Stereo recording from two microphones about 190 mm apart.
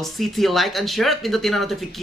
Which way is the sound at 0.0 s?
Centre (ahead or behind).